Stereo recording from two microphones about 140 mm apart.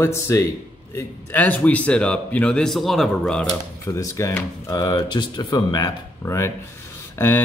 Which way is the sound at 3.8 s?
25° left (ahead or behind).